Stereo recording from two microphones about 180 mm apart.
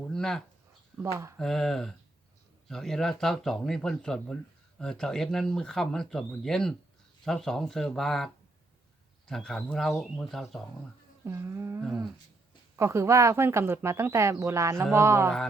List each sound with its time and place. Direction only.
0.1 s a sound: 5° left (ahead or behind)
1.0 s speech: 15° right (ahead or behind)
1.4 s speech: centre (ahead or behind)
11.3 s speech: 15° right (ahead or behind)